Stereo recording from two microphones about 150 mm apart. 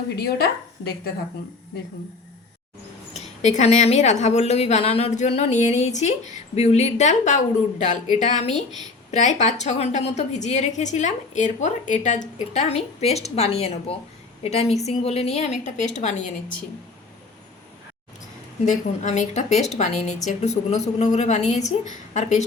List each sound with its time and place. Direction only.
0.2 s speech: 90° left
3.1 s a woman's voice: 50° left (ahead or behind)
18.6 s a woman's voice: 55° left (ahead or behind)